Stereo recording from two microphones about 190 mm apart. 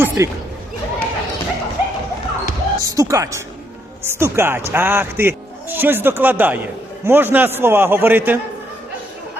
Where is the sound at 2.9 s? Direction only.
15° right (ahead or behind).